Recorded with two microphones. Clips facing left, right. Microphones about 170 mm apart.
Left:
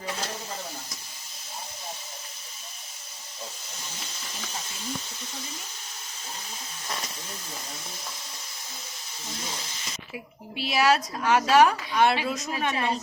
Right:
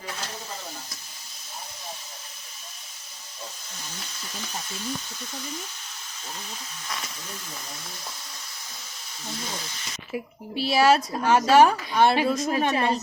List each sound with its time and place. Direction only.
10.1 s a woman's voice: 35° right (ahead or behind)